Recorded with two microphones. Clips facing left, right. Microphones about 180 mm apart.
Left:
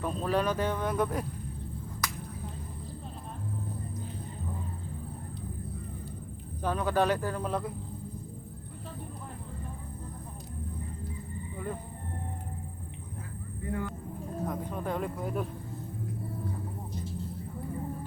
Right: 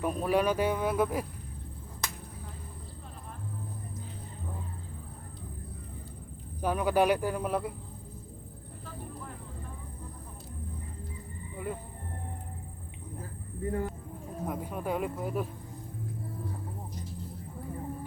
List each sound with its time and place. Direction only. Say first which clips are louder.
0.0 s speech: right 2 dB; 10° right (ahead or behind)
2.0 s a sound: left 2 dB; 25° right (ahead or behind)
6.6 s speech: right 2 dB; 10° right (ahead or behind)
11.5 s a sound: right 1 dB; 10° right (ahead or behind)
13.7 s speech: right 2 dB; 35° right (ahead or behind)
14.4 s speech: right 1 dB; 10° right (ahead or behind)